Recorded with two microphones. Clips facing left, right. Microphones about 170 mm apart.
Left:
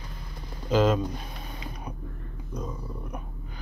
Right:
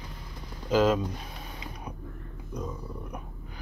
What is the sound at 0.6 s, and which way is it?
Speech, 5° right (ahead or behind).